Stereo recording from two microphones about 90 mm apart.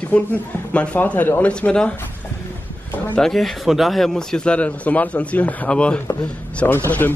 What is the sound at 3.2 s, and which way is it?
A man's voice, 5° left (ahead or behind).